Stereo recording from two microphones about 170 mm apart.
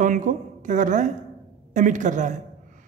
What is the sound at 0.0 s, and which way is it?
A man's voice, 50° right (ahead or behind).